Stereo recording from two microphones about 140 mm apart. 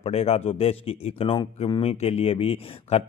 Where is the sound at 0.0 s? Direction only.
45° left (ahead or behind).